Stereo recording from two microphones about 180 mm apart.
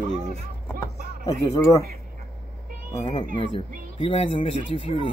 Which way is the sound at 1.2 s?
20° left (ahead or behind).